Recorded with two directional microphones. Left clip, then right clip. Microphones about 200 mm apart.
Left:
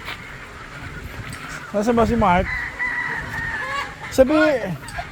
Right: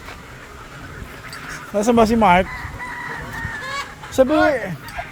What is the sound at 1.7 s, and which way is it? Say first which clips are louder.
Speech: right 3 dB; 20° right (ahead or behind).